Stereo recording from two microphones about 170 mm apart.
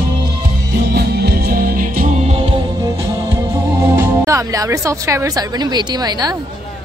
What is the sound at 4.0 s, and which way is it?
Speech, 15° right (ahead or behind).